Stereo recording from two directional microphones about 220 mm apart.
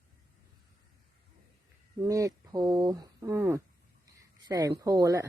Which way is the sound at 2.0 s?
15° right (ahead or behind).